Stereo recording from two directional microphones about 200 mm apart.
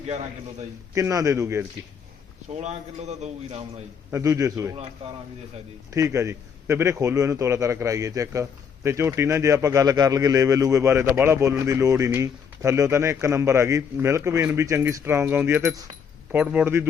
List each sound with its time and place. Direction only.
0.9 s a man's voice: 15° right (ahead or behind)
2.5 s speech: 35° right (ahead or behind)
4.1 s a man's voice: 15° right (ahead or behind)
5.9 s a man's voice: 15° right (ahead or behind)